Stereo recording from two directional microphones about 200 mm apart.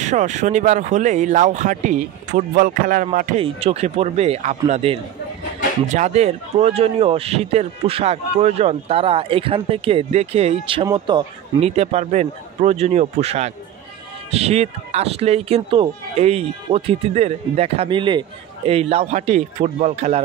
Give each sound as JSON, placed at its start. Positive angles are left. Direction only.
{"t": 0.0, "sound": "speech", "side_deg": -35}
{"t": 3.3, "sound": "a man's voice", "side_deg": -30}